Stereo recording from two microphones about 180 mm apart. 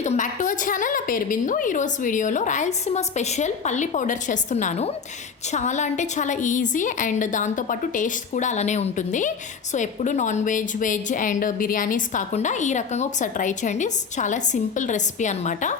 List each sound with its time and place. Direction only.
0.0 s a woman's voice: 40° left (ahead or behind)